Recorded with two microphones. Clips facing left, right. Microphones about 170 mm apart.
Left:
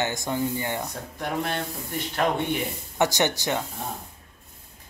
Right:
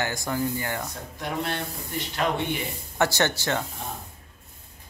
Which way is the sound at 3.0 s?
15° left (ahead or behind).